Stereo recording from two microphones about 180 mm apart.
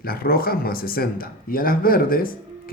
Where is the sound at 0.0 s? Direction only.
55° left (ahead or behind).